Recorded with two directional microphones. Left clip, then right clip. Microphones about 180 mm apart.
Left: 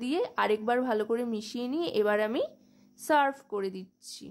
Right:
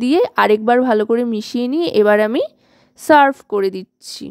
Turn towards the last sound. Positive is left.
turn(degrees=-50)  # may be behind; listen again after turning